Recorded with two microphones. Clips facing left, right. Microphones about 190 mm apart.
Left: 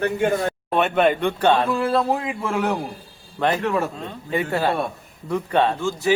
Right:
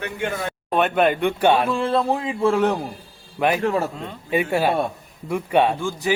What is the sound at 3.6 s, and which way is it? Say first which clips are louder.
Speech: right 1 dB; 35° right (ahead or behind).